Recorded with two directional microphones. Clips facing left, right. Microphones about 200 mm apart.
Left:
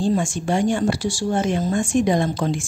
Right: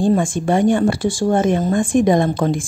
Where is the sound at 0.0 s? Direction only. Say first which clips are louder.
Right 5 dB; 55° right (ahead or behind).